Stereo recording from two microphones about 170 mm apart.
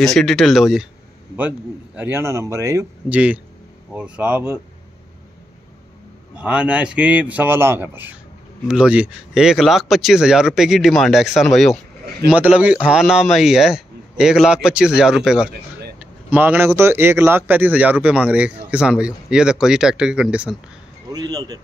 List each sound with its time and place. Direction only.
0.0 s a man's voice: centre (ahead or behind)
2.0 s a man's voice: 15° right (ahead or behind)
3.1 s a man's voice: 10° right (ahead or behind)
6.3 s a man's voice: 5° right (ahead or behind)
21.1 s speech: 25° right (ahead or behind)